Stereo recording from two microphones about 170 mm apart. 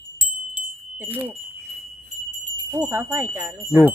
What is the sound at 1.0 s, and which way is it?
Wind chime, 10° right (ahead or behind).